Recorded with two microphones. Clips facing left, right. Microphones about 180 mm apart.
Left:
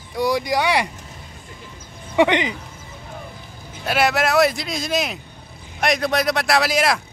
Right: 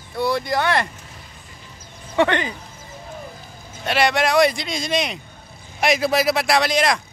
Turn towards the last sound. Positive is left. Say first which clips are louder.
# even
turn(degrees=5)  # may be behind; listen again after turning